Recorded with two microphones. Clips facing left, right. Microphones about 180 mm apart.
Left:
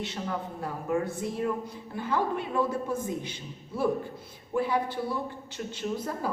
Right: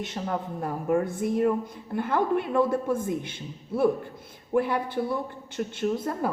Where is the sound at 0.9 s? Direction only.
55° right (ahead or behind).